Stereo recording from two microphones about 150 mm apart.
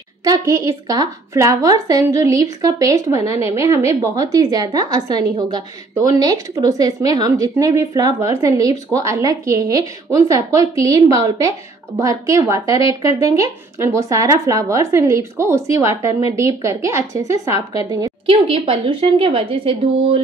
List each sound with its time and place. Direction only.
0.2 s a woman's voice: 20° right (ahead or behind)
16.1 s a woman's voice: 40° left (ahead or behind)
16.3 s a woman's voice: 20° right (ahead or behind)
18.2 s a woman's voice: 40° right (ahead or behind)